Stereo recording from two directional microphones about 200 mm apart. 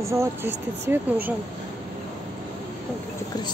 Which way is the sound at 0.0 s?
15° right (ahead or behind).